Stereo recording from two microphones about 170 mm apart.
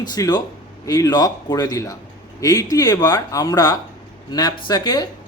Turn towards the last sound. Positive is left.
turn(degrees=25)  # may be behind; listen again after turning